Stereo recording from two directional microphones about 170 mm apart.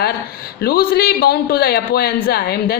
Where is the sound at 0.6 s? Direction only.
65° left (ahead or behind).